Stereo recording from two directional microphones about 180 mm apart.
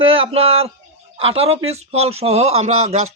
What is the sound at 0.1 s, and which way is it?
A man's voice, 30° right (ahead or behind).